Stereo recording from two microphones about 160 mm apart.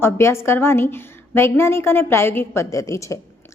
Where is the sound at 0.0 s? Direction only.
15° left (ahead or behind).